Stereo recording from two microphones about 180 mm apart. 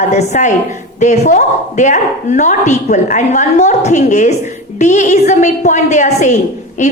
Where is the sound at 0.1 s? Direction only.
40° left (ahead or behind).